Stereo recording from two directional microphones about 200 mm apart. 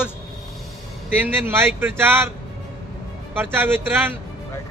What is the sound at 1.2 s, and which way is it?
Speech, 10° right (ahead or behind).